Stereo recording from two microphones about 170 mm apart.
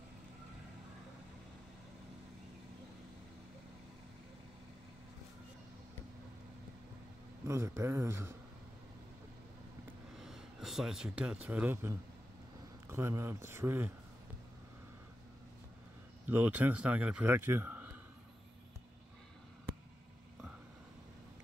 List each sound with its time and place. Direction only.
7.4 s a man's voice: 15° right (ahead or behind)
10.1 s a man's voice: centre (ahead or behind)
16.3 s a man's voice: 10° right (ahead or behind)